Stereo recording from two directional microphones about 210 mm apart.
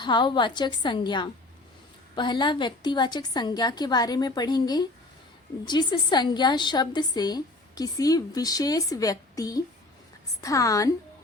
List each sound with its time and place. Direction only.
0.0 s a woman's voice: 20° left (ahead or behind)